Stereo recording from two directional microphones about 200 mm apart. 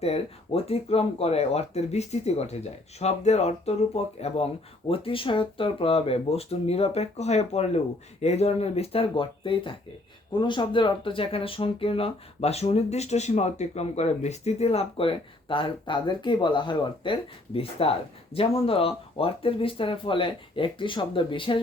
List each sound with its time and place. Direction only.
0.0 s speech: 30° left (ahead or behind)